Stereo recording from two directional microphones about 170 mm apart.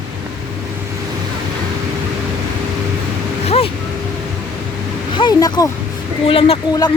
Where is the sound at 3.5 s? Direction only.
35° left (ahead or behind).